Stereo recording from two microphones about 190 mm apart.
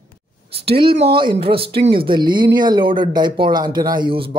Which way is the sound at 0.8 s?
25° right (ahead or behind).